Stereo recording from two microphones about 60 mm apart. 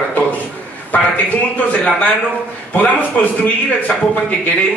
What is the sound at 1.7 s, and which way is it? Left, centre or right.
A man's voice, left.